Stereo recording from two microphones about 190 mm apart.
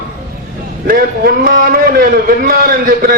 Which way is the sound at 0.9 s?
50° right (ahead or behind).